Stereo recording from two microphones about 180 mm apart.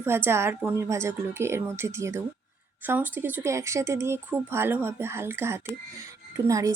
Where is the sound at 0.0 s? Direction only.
15° right (ahead or behind).